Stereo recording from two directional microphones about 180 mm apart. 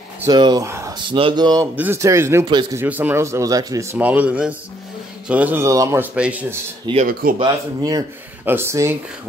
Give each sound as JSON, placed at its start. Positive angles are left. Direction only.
{"t": 0.2, "sound": "a man's voice", "side_deg": -25}
{"t": 2.8, "sound": "a man's voice", "side_deg": -10}
{"t": 6.9, "sound": "speech", "side_deg": -25}
{"t": 7.2, "sound": "speech", "side_deg": -55}
{"t": 8.5, "sound": "a man's voice", "side_deg": -15}